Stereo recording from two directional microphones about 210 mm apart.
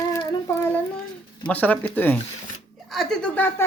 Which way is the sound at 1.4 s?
5° left (ahead or behind).